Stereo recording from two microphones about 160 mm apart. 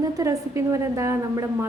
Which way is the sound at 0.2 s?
20° right (ahead or behind).